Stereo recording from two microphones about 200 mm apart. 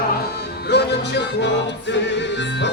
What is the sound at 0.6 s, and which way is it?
Music, 55° left (ahead or behind).